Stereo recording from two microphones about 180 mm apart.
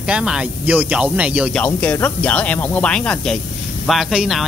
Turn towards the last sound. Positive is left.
turn(degrees=0)  # may be behind; listen again after turning